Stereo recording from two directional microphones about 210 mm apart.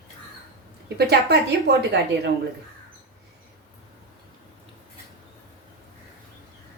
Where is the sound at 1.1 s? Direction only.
50° right (ahead or behind).